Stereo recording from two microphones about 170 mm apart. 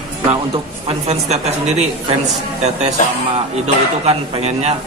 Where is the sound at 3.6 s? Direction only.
40° right (ahead or behind).